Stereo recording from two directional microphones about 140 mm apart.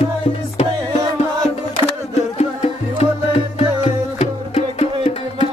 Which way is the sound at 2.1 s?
50° left (ahead or behind).